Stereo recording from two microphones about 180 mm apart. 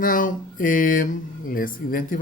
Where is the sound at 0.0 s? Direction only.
50° left (ahead or behind).